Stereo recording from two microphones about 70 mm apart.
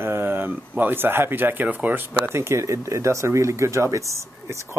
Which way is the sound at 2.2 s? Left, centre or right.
Right.